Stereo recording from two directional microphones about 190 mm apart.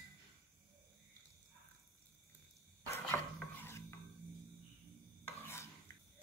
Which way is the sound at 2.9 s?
10° left (ahead or behind).